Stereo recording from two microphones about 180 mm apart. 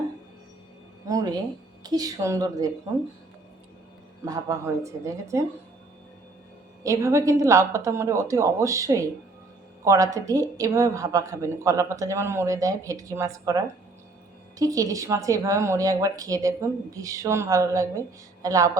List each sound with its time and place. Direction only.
1.0 s a woman's voice: 20° right (ahead or behind)
4.3 s a woman's voice: 20° right (ahead or behind)
6.8 s a woman's voice: 15° right (ahead or behind)